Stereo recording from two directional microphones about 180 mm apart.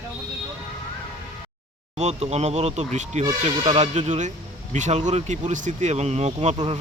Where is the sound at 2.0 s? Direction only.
40° right (ahead or behind).